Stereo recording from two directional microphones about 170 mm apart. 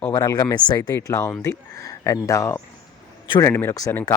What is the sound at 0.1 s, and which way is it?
Speech, 20° left (ahead or behind).